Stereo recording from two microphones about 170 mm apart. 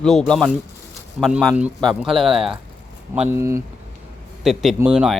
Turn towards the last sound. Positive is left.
turn(degrees=-5)  # may be behind; listen again after turning